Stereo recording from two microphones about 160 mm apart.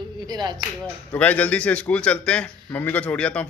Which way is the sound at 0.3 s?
25° right (ahead or behind).